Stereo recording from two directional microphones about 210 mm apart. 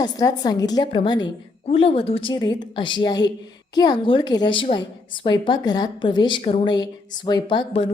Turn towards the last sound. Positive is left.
turn(degrees=25)  # may be behind; listen again after turning